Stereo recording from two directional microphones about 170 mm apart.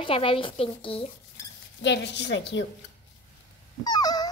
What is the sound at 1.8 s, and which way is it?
Speech, 90° left.